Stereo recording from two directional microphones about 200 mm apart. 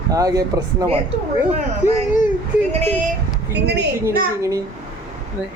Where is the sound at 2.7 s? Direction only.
30° right (ahead or behind).